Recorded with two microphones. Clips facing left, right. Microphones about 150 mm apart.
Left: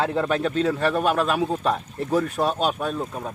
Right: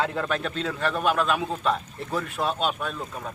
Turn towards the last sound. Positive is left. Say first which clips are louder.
# left 5 dB
turn(degrees=30)  # may be behind; listen again after turning